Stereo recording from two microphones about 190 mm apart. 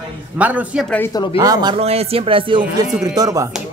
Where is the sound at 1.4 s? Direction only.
20° right (ahead or behind).